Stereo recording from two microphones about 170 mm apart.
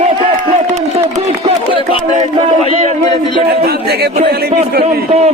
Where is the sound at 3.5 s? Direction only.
70° right (ahead or behind).